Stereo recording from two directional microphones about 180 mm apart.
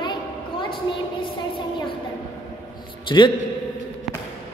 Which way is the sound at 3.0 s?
25° left (ahead or behind).